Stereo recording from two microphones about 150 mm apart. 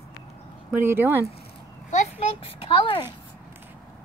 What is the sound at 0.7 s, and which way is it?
Speech, 15° right (ahead or behind).